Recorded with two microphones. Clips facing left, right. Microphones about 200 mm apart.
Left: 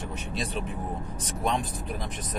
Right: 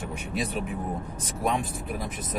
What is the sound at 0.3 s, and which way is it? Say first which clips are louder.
Speech: right 3 dB; 5° right (ahead or behind).